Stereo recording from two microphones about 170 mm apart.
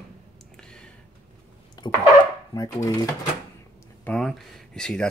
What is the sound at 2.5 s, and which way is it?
Chopping, 20° left (ahead or behind).